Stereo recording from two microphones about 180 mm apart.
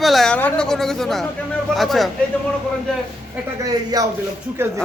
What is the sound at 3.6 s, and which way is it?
Speech, 20° right (ahead or behind).